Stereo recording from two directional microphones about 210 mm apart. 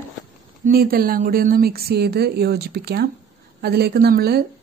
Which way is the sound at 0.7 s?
45° right (ahead or behind).